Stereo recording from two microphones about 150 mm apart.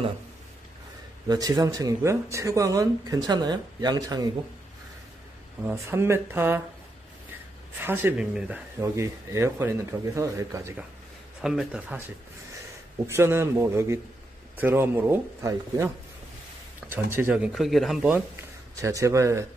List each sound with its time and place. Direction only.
1.3 s speech: 25° right (ahead or behind)
5.6 s speech: 15° right (ahead or behind)
7.8 s speech: 15° right (ahead or behind)
11.4 s speech: 5° right (ahead or behind)
13.0 s speech: 15° right (ahead or behind)
16.9 s speech: 15° right (ahead or behind)
18.1 s speech: 20° right (ahead or behind)